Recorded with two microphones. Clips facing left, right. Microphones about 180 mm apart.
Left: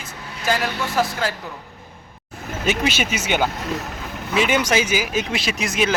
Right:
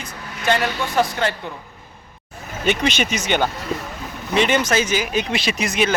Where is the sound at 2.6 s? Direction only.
5° left (ahead or behind).